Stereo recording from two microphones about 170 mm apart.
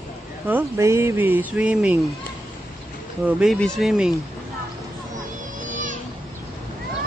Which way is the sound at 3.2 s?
Centre (ahead or behind).